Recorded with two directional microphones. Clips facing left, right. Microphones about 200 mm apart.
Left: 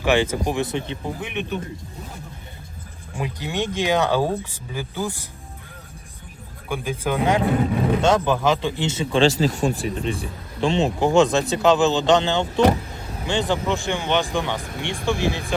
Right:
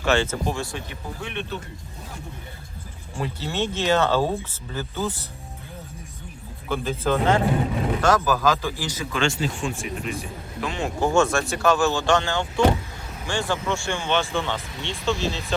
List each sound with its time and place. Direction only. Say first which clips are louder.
0.0 s speech: left 3 dB; 15° left (ahead or behind)
3.2 s speech: left 1 dB; 15° left (ahead or behind)
6.7 s speech: right 1 dB; 15° left (ahead or behind)
8.0 s speech: even; 25° left (ahead or behind)
14.6 s speech: left 5 dB; 50° left (ahead or behind)
15.0 s speech: left 2 dB; 15° left (ahead or behind)